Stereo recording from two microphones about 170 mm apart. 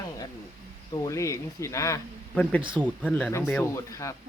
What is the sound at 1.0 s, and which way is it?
Speech, 20° left (ahead or behind).